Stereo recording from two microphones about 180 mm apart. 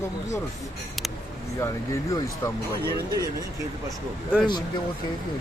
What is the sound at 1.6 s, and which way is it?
Speech, 15° left (ahead or behind).